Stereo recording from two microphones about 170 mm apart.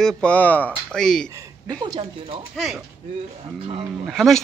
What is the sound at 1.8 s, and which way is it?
Speech, 30° right (ahead or behind).